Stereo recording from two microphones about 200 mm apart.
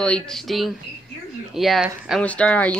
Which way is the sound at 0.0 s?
5° left (ahead or behind).